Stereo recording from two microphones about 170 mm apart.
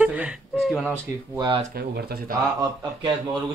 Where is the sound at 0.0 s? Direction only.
10° right (ahead or behind).